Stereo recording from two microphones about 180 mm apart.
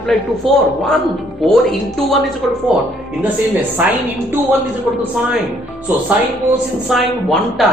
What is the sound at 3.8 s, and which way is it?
Speech, 10° right (ahead or behind).